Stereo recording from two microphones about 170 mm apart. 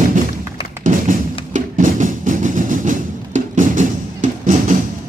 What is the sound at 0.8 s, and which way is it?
Music, 50° right (ahead or behind).